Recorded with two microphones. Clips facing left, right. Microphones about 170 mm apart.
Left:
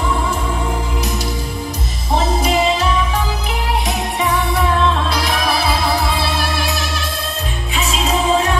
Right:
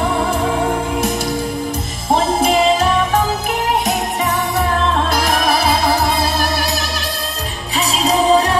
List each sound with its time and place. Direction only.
2.4 s music: 50° right (ahead or behind)